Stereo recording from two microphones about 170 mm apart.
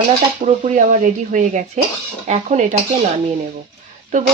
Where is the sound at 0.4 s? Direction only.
45° right (ahead or behind).